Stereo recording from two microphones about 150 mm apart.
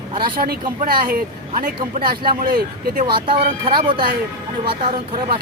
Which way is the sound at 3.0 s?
35° right (ahead or behind).